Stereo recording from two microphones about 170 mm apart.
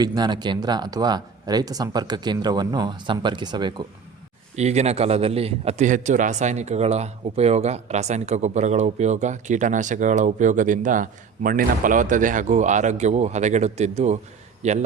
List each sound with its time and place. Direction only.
0.0 s speech: 25° right (ahead or behind)
4.5 s a man's voice: 40° right (ahead or behind)